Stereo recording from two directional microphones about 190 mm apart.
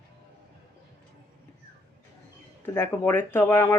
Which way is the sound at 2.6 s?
10° left (ahead or behind).